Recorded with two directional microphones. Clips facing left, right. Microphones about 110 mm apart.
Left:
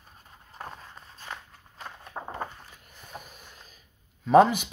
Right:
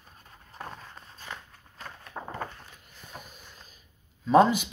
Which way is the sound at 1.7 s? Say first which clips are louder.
Left 1 dB; 15° left (ahead or behind).